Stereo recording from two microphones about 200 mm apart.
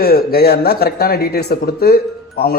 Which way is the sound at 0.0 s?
50° left (ahead or behind).